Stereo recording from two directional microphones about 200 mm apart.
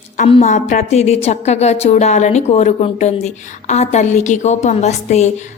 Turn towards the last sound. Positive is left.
turn(degrees=35)  # may be behind; listen again after turning